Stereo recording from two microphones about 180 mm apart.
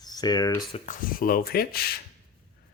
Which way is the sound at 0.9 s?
50° left (ahead or behind).